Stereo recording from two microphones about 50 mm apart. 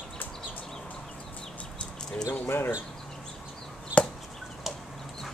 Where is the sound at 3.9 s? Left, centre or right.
Right.